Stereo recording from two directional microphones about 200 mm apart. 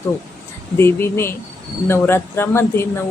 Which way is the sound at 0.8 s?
10° left (ahead or behind).